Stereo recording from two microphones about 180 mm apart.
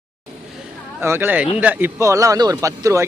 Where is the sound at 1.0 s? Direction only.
10° right (ahead or behind).